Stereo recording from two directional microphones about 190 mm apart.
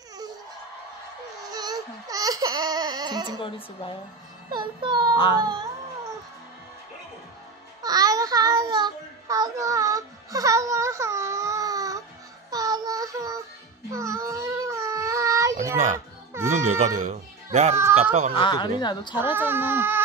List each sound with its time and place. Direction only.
1.5 s baby cry: 20° right (ahead or behind)
3.3 s speech: 30° left (ahead or behind)
4.5 s music: 25° right (ahead or behind)
7.8 s child singing: 20° right (ahead or behind)
13.9 s a sound: 15° right (ahead or behind)
16.6 s speech: 40° right (ahead or behind)
18.3 s speech: 25° left (ahead or behind)
19.1 s speech: 10° right (ahead or behind)